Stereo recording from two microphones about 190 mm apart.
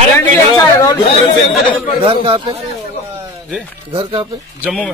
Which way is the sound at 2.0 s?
30° right (ahead or behind).